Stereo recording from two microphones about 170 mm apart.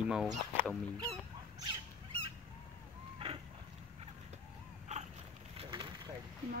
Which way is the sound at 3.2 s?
30° right (ahead or behind).